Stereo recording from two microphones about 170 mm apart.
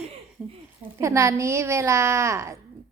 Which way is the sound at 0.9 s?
15° right (ahead or behind).